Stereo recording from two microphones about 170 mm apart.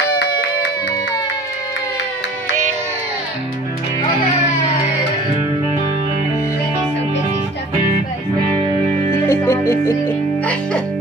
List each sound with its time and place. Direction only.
0.2 s music: 75° left (ahead or behind)
9.1 s music: 15° left (ahead or behind)